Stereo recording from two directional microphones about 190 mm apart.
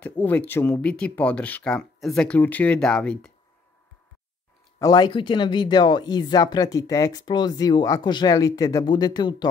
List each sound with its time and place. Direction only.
0.2 s speech: 10° left (ahead or behind)
4.7 s speech: 20° left (ahead or behind)